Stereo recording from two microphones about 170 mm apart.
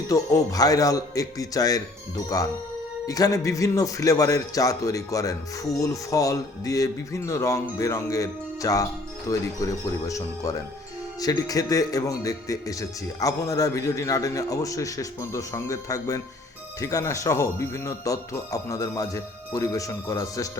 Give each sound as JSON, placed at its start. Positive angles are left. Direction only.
{"t": 0.1, "sound": "speech", "side_deg": 20}